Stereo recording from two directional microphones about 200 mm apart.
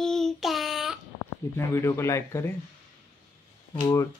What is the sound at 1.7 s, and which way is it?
Speech, 15° left (ahead or behind).